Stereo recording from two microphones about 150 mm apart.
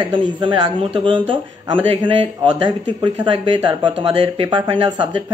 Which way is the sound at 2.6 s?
30° right (ahead or behind).